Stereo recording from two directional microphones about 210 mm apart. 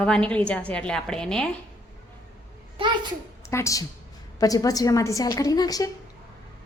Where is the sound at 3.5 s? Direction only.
15° left (ahead or behind).